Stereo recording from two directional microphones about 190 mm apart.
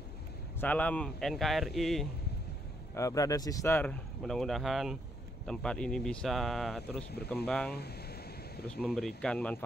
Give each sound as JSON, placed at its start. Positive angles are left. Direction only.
{"t": 0.6, "sound": "speech", "side_deg": 10}
{"t": 2.9, "sound": "speech", "side_deg": 15}
{"t": 7.7, "sound": "a sound", "side_deg": 55}
{"t": 8.6, "sound": "speech", "side_deg": 0}